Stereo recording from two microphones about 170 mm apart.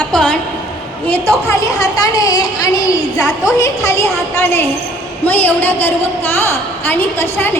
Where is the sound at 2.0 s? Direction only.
20° left (ahead or behind).